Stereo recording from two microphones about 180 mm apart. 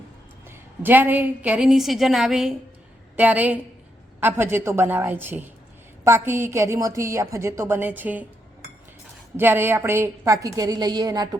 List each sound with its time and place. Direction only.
0.4 s a woman's voice: 10° right (ahead or behind)
9.4 s a woman's voice: 10° right (ahead or behind)